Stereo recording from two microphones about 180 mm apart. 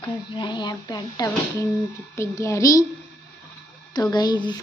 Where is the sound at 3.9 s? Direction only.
25° left (ahead or behind).